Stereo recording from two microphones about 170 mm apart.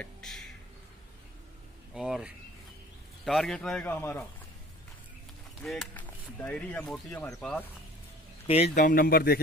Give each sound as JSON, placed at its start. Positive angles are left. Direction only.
{"t": 0.0, "sound": "a sound", "side_deg": 0}
{"t": 2.0, "sound": "speech", "side_deg": -5}
{"t": 5.6, "sound": "speech", "side_deg": 5}
{"t": 8.7, "sound": "speech", "side_deg": 55}